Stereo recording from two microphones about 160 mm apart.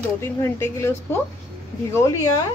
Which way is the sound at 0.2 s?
15° left (ahead or behind).